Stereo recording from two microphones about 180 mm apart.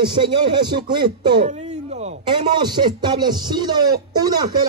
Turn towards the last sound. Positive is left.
turn(degrees=-20)  # may be behind; listen again after turning